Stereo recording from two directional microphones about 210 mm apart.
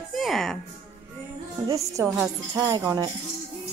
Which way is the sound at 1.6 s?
15° right (ahead or behind).